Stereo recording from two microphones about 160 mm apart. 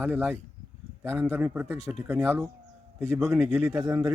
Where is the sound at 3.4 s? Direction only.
5° right (ahead or behind).